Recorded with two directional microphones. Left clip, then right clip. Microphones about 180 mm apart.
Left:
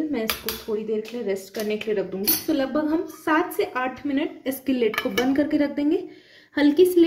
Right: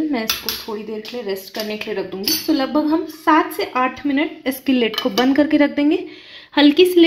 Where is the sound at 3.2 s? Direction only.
35° right (ahead or behind).